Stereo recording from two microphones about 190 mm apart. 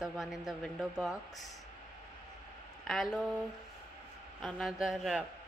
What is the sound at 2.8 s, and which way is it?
Speech, centre (ahead or behind).